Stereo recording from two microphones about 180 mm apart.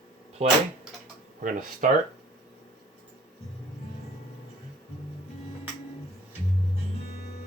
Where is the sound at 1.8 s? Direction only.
45° right (ahead or behind).